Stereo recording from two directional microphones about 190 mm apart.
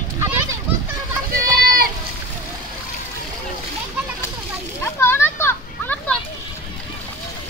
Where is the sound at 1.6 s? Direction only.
50° right (ahead or behind).